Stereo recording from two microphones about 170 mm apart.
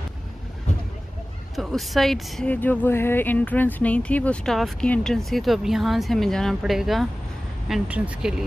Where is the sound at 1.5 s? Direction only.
Centre (ahead or behind).